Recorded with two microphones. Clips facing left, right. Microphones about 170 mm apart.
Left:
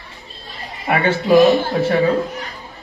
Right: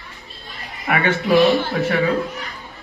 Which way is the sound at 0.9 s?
30° left (ahead or behind).